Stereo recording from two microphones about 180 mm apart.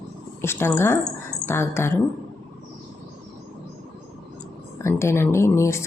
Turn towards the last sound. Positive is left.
turn(degrees=15)  # may be behind; listen again after turning